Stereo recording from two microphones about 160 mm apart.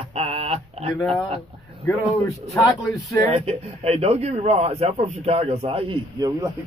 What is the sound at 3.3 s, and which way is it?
A man's voice, 40° right (ahead or behind).